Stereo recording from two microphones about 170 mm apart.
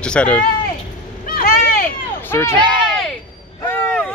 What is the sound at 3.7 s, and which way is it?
Vehicle, 10° left (ahead or behind).